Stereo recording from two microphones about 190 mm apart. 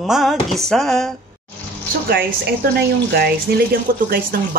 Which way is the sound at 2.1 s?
60° right (ahead or behind).